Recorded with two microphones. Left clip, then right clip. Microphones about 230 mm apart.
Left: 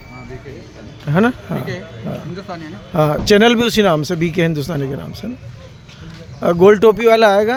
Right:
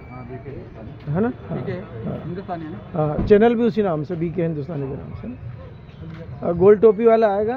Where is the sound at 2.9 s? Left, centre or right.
Left.